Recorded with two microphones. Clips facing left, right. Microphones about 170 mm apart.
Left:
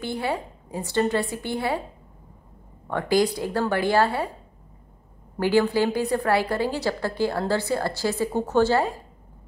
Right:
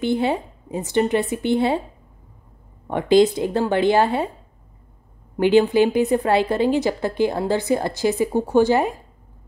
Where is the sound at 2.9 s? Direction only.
20° right (ahead or behind).